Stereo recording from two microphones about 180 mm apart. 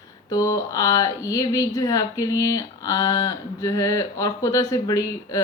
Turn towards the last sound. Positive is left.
turn(degrees=20)  # may be behind; listen again after turning